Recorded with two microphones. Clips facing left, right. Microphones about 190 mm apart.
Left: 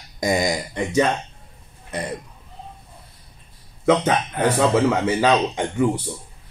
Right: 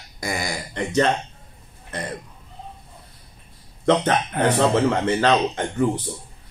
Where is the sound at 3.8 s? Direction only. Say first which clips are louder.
Left 1 dB; 5° left (ahead or behind).